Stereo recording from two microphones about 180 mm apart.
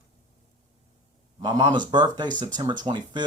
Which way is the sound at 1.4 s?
20° right (ahead or behind).